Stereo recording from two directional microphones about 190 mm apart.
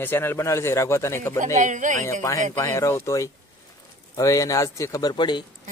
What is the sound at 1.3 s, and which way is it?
Speech, 40° right (ahead or behind).